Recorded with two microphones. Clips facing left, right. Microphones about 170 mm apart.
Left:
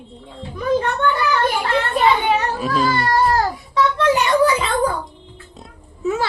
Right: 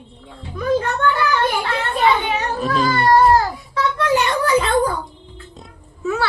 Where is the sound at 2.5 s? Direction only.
5° left (ahead or behind).